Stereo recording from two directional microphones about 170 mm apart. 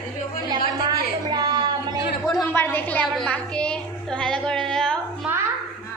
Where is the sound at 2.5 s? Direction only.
10° left (ahead or behind).